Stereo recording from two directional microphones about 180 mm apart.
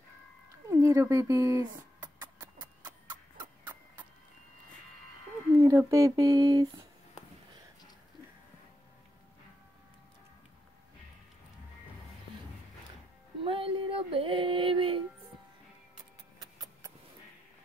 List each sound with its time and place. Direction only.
0.7 s a sound: 15° right (ahead or behind)
5.7 s speech: 15° right (ahead or behind)
13.4 s female singing: 30° right (ahead or behind)